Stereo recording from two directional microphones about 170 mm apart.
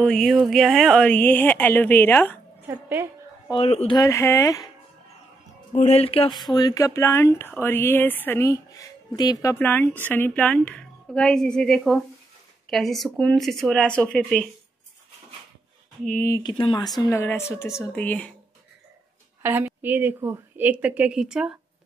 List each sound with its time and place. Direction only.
0.0 s speech: centre (ahead or behind)
3.4 s speech: 35° left (ahead or behind)
3.9 s speech: 20° left (ahead or behind)
5.8 s speech: 40° left (ahead or behind)
6.5 s speech: 20° left (ahead or behind)
16.1 s speech: 15° left (ahead or behind)
16.5 s speech: 25° left (ahead or behind)
17.0 s speech: 15° left (ahead or behind)
19.4 s a woman's voice: 10° right (ahead or behind)